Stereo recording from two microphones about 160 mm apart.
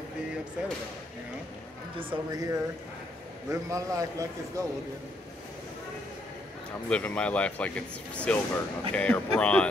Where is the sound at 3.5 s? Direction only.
20° right (ahead or behind).